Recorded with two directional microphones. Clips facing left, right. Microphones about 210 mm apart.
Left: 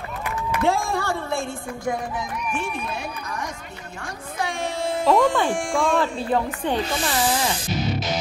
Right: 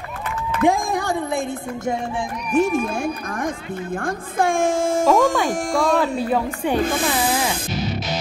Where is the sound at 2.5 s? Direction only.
45° right (ahead or behind).